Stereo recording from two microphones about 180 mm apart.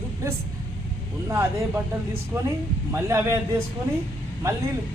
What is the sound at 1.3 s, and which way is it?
Speech, 15° right (ahead or behind).